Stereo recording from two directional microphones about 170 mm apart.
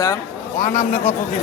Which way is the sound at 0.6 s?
45° left (ahead or behind).